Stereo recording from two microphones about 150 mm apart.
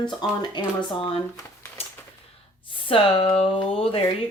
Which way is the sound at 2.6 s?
35° left (ahead or behind).